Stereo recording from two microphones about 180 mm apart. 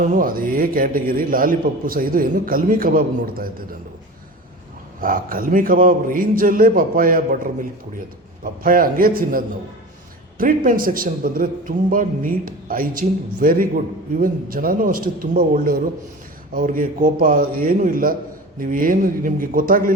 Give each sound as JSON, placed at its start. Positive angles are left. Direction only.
{"t": 0.0, "sound": "a man's voice", "side_deg": -45}
{"t": 4.9, "sound": "a man's voice", "side_deg": -50}
{"t": 8.6, "sound": "a man's voice", "side_deg": -50}